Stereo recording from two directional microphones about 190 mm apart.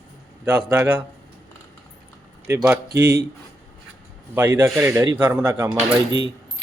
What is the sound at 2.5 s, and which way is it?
Speech, 15° right (ahead or behind).